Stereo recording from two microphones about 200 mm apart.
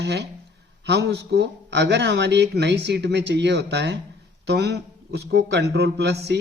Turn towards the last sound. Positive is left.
turn(degrees=-55)  # may be behind; listen again after turning